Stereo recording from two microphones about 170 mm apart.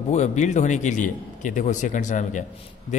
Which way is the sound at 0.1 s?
45° left (ahead or behind).